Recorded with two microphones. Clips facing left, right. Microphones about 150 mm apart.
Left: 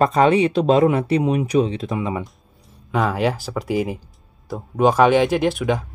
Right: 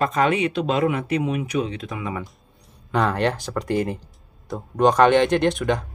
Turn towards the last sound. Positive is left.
turn(degrees=5)  # may be behind; listen again after turning